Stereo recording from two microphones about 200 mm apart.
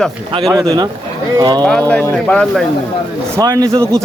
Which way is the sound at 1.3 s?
20° right (ahead or behind).